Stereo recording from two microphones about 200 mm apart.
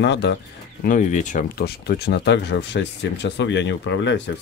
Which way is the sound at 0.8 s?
40° left (ahead or behind).